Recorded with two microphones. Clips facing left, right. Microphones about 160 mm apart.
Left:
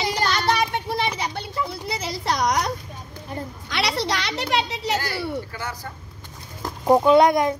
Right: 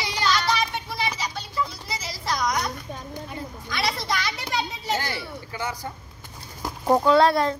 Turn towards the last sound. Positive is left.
turn(degrees=15)  # may be behind; listen again after turning